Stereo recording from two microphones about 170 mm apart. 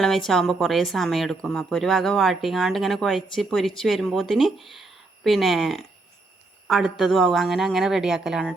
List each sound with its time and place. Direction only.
0.0 s a woman's voice: centre (ahead or behind)